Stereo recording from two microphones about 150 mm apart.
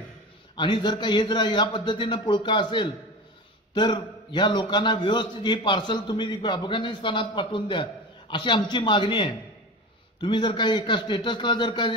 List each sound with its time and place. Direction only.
0.6 s a man's voice: 30° left (ahead or behind)